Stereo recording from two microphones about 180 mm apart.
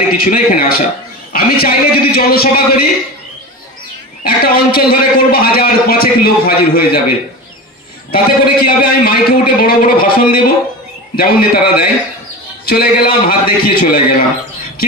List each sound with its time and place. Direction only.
0.2 s a man's voice: 55° left (ahead or behind)
4.2 s a man's voice: 55° left (ahead or behind)
8.1 s a man's voice: 55° left (ahead or behind)